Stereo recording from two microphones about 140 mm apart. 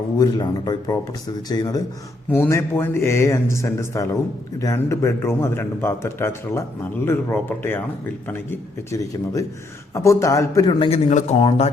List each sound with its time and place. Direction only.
0.2 s a man's voice: 30° left (ahead or behind)
2.3 s a man's voice: 15° left (ahead or behind)
10.8 s speech: 45° left (ahead or behind)